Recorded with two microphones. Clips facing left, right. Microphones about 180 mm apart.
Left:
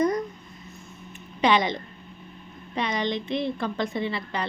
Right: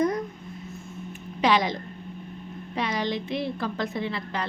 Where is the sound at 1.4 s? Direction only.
Centre (ahead or behind).